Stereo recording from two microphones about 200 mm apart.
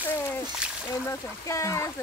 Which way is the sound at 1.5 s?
15° left (ahead or behind).